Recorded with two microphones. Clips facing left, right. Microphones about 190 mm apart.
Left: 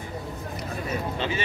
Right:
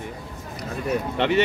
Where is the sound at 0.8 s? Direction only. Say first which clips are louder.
Right 7 dB; 70° right (ahead or behind).